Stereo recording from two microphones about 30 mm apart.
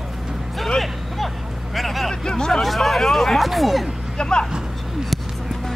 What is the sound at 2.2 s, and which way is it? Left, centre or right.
Hubbub, left.